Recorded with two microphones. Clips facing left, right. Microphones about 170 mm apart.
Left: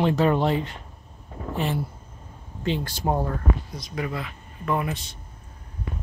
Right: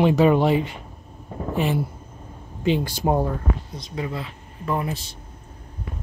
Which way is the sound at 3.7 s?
25° right (ahead or behind).